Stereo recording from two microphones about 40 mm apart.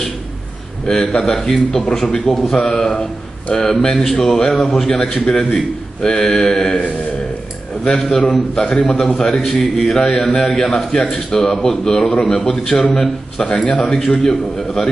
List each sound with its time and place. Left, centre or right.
0.8 s a man's voice: centre
7.8 s a man's voice: centre